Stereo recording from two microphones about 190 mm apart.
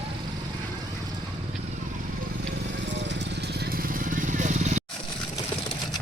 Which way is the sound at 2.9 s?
70° right (ahead or behind).